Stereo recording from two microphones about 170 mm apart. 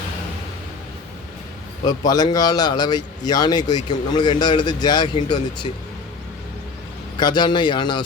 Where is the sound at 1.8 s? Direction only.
25° left (ahead or behind).